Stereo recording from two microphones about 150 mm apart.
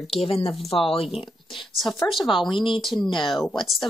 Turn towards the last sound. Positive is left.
turn(degrees=35)  # may be behind; listen again after turning